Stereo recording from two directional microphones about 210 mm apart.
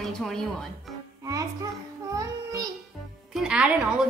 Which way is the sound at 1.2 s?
15° right (ahead or behind).